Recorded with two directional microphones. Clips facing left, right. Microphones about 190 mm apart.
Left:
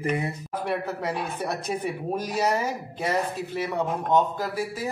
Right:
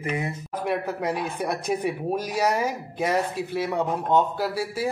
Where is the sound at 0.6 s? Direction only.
10° right (ahead or behind).